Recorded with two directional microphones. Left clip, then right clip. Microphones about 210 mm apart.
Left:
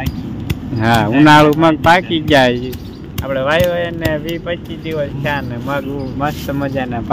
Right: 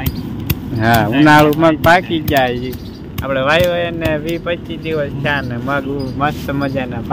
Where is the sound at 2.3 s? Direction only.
45° left (ahead or behind).